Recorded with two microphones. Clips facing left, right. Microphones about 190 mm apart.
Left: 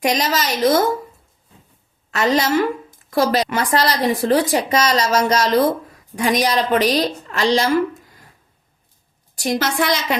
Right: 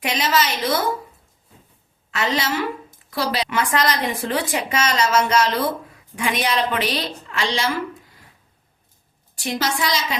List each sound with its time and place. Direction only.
0.0 s a woman's voice: 40° left (ahead or behind)
2.0 s a woman's voice: 40° left (ahead or behind)
9.3 s a sound: 40° left (ahead or behind)
9.6 s a woman's voice: 55° left (ahead or behind)